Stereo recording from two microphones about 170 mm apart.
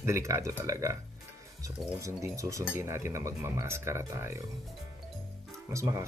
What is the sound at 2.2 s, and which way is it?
Speech, 20° right (ahead or behind).